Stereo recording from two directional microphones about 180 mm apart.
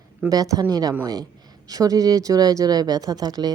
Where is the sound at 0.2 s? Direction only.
20° right (ahead or behind).